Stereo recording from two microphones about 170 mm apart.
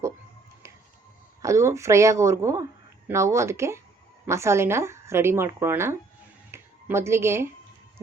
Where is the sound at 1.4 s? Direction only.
15° right (ahead or behind).